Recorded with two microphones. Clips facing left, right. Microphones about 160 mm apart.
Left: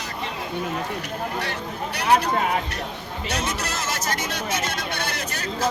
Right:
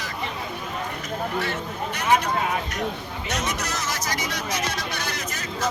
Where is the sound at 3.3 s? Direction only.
30° left (ahead or behind).